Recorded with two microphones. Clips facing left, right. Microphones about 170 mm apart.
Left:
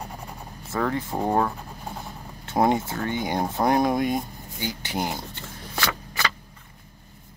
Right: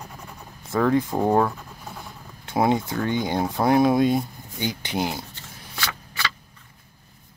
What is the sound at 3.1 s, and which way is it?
Speech, 20° left (ahead or behind).